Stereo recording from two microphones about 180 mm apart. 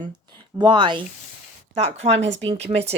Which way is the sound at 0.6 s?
25° right (ahead or behind).